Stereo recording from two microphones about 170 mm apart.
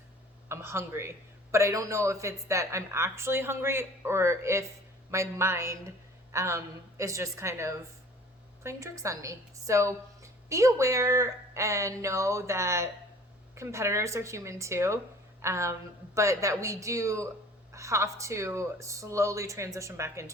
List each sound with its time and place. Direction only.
0.4 s a woman's voice: 15° right (ahead or behind)